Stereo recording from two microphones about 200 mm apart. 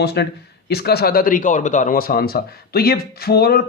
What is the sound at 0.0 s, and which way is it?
A man's voice, 55° left (ahead or behind).